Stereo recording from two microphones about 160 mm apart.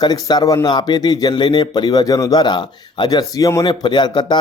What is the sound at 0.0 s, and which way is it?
A man's voice, 25° left (ahead or behind).